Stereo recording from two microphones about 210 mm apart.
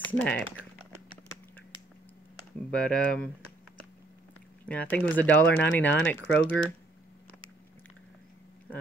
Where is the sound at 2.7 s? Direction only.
5° left (ahead or behind).